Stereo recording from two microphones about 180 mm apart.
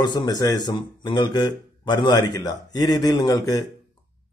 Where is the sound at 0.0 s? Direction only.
25° left (ahead or behind).